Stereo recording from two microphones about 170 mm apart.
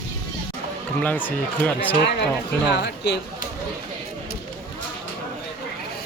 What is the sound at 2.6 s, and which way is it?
Speech, 85° left.